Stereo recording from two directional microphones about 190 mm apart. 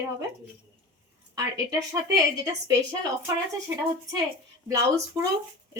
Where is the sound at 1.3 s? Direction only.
20° right (ahead or behind).